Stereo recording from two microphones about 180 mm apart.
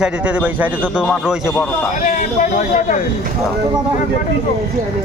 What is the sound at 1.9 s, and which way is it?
Speech, 45° left (ahead or behind).